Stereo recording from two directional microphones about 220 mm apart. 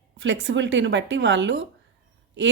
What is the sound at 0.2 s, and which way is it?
A woman's voice, 55° right (ahead or behind).